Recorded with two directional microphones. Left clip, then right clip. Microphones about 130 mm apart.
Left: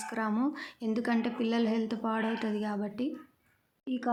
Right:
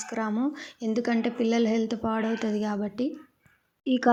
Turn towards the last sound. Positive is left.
turn(degrees=-50)  # may be behind; listen again after turning